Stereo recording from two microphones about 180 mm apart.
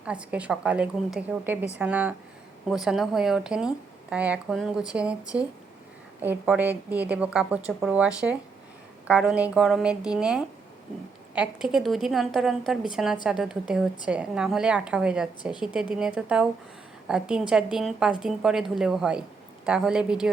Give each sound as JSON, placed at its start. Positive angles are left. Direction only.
{"t": 0.0, "sound": "a woman's voice", "side_deg": -5}